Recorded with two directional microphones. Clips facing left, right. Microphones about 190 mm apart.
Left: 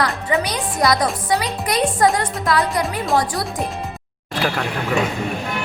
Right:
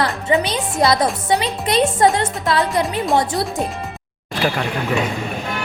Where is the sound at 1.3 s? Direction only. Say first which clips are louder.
Right 2 dB; 25° right (ahead or behind).